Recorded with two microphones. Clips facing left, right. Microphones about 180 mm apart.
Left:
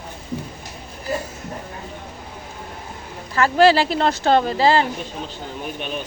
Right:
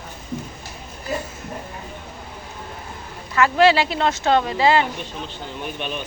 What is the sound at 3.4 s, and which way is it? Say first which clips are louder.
Speech: left 1 dB; 35° left (ahead or behind).